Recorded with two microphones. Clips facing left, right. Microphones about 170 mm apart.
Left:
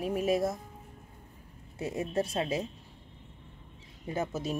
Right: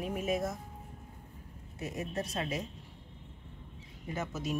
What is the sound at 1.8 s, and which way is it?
Speech, 30° left (ahead or behind).